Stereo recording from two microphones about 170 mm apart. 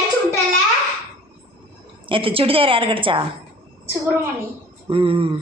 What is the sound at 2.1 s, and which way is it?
A woman's voice, 30° right (ahead or behind).